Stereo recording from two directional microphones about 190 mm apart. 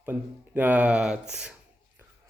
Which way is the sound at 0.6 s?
10° right (ahead or behind).